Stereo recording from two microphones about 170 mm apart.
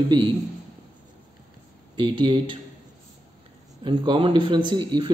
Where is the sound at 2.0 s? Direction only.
30° right (ahead or behind).